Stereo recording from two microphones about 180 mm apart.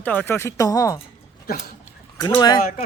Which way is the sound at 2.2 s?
20° left (ahead or behind).